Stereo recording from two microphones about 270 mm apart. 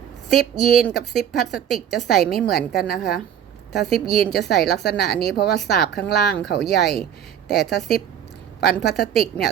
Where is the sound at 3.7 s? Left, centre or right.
Centre.